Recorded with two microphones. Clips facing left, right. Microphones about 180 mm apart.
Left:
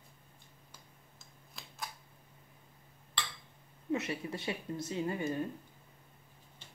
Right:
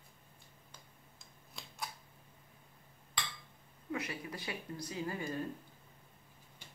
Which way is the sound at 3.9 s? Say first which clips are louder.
Left 5 dB; 25° left (ahead or behind).